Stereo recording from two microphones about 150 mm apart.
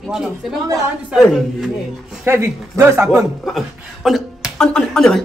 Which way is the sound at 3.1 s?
Centre (ahead or behind).